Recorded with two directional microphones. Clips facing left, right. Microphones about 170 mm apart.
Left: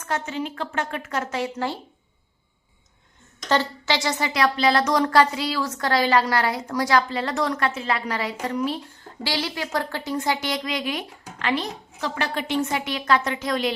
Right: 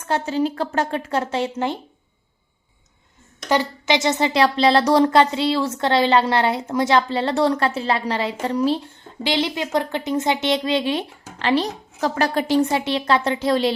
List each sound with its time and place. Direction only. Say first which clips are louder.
0.0 s speech: right 7 dB; 30° right (ahead or behind)
3.5 s speech: right 3 dB; 15° right (ahead or behind)